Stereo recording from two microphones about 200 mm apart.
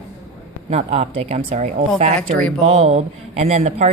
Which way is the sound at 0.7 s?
30° right (ahead or behind).